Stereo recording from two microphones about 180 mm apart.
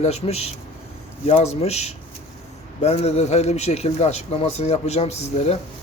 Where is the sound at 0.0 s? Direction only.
35° left (ahead or behind).